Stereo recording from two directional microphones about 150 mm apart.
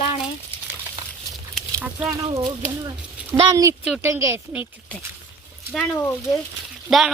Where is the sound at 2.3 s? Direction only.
20° right (ahead or behind).